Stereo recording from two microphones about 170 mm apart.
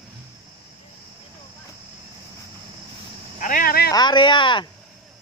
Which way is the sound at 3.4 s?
55° left (ahead or behind).